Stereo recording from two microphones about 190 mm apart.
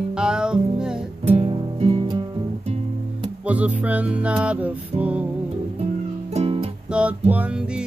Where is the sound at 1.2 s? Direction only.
30° right (ahead or behind).